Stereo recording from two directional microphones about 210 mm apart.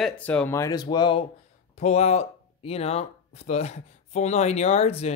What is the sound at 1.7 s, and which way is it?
Speech, 30° left (ahead or behind).